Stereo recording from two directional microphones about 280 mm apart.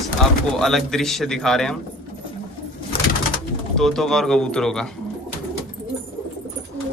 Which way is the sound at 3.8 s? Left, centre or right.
Centre.